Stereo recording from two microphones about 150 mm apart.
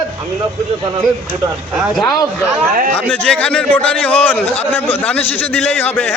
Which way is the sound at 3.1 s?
10° left (ahead or behind).